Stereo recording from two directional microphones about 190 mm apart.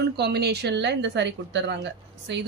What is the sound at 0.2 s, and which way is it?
Speech, 60° right (ahead or behind).